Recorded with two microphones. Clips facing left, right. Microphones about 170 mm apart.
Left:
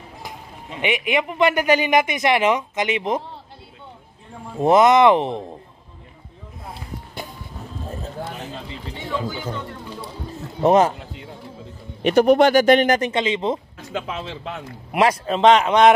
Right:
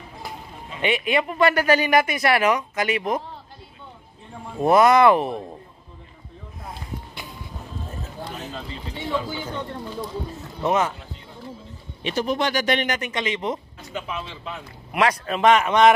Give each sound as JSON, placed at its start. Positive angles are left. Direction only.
{"t": 0.7, "sound": "a man's voice", "side_deg": 15}
{"t": 4.6, "sound": "a man's voice", "side_deg": 20}
{"t": 10.6, "sound": "speech", "side_deg": 35}
{"t": 12.0, "sound": "speech", "side_deg": 60}
{"t": 13.1, "sound": "a man's voice", "side_deg": 25}
{"t": 13.9, "sound": "speech", "side_deg": 90}
{"t": 15.0, "sound": "a man's voice", "side_deg": 25}